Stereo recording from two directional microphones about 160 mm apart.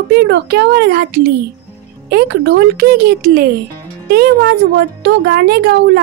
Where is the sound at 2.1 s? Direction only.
90° right; by 3.5 s 75° right (ahead or behind).